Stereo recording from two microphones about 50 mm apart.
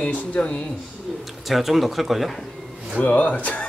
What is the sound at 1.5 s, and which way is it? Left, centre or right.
Speech, centre.